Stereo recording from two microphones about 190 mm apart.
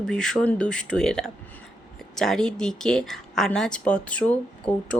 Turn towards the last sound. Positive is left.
turn(degrees=5)  # may be behind; listen again after turning